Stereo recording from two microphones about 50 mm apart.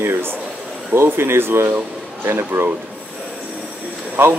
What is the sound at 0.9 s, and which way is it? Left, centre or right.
Speech, right.